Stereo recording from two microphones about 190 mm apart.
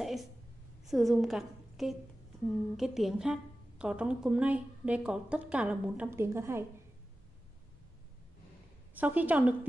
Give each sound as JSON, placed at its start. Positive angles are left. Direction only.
{"t": 0.0, "sound": "a sound", "side_deg": 0}
{"t": 0.8, "sound": "a woman's voice", "side_deg": 0}
{"t": 8.9, "sound": "a woman's voice", "side_deg": -10}